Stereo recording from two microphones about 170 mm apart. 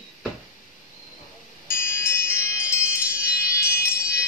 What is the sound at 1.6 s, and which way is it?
Chime, 15° left (ahead or behind).